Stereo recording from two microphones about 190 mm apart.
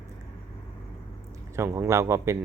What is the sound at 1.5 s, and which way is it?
Speech, 15° right (ahead or behind).